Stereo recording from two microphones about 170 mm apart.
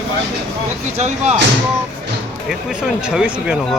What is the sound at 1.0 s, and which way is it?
Speech, 40° right (ahead or behind).